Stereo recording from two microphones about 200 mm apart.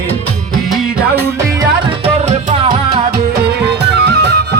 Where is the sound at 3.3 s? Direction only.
60° right (ahead or behind).